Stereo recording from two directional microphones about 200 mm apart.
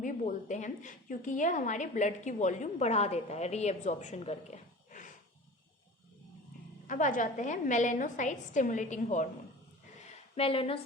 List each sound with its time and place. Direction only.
0.0 s a woman's voice: 40° left (ahead or behind)
6.8 s a woman's voice: 40° left (ahead or behind)
10.3 s a woman's voice: 30° left (ahead or behind)